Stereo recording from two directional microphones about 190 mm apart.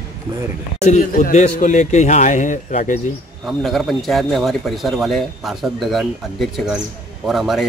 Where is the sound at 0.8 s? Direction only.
40° left (ahead or behind).